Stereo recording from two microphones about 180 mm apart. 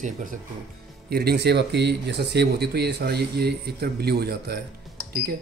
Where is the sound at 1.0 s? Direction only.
60° right (ahead or behind).